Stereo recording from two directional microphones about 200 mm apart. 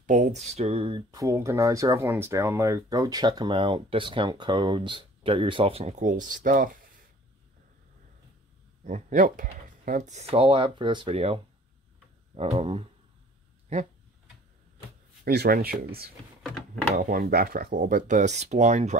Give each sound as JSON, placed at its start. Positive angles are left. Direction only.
{"t": 0.0, "sound": "speech", "side_deg": -40}
{"t": 8.8, "sound": "speech", "side_deg": -40}
{"t": 15.2, "sound": "speech", "side_deg": -50}
{"t": 16.4, "sound": "speech", "side_deg": 5}
{"t": 16.9, "sound": "speech", "side_deg": -45}